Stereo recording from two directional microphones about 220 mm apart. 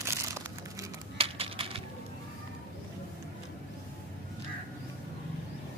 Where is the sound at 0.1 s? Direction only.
15° right (ahead or behind).